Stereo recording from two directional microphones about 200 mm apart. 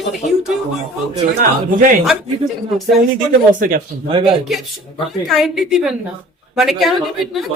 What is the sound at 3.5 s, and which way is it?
Speech, 45° right (ahead or behind).